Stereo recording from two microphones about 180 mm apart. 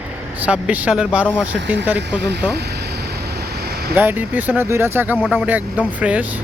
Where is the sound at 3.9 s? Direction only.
10° right (ahead or behind).